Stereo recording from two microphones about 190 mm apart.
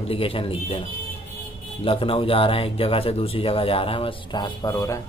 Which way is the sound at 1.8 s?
30° left (ahead or behind).